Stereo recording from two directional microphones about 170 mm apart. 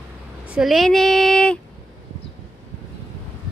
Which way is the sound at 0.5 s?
Centre (ahead or behind).